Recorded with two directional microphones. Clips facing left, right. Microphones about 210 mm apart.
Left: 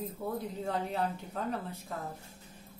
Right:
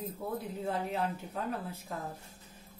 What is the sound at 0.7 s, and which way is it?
Speech, centre (ahead or behind).